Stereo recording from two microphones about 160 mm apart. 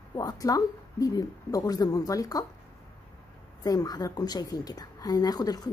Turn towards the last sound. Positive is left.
turn(degrees=25)  # may be behind; listen again after turning